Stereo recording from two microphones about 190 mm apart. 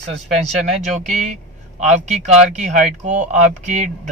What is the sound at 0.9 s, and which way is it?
Speech, 40° right (ahead or behind).